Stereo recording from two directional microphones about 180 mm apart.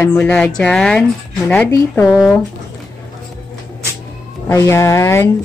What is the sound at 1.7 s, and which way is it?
Speech, 15° left (ahead or behind).